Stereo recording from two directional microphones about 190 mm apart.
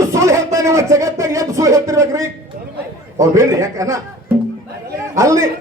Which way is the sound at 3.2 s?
15° right (ahead or behind).